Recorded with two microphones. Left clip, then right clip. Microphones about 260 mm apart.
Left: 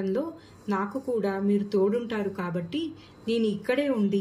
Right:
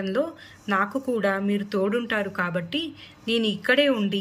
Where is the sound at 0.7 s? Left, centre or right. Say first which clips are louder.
Right 5 dB; right.